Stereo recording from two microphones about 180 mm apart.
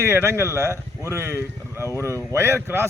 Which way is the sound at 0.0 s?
15° right (ahead or behind).